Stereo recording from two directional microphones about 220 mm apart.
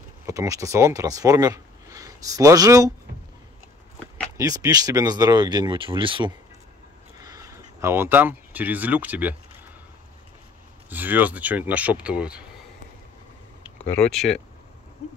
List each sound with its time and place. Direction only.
0.3 s speech: 15° right (ahead or behind)
4.4 s speech: 15° right (ahead or behind)
10.9 s speech: 10° right (ahead or behind)
13.8 s speech: 5° left (ahead or behind)